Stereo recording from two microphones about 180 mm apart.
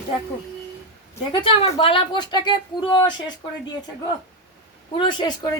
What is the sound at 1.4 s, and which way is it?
A woman's voice, 30° left (ahead or behind).